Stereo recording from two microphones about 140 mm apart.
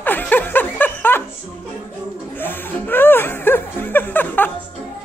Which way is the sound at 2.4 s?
15° left (ahead or behind).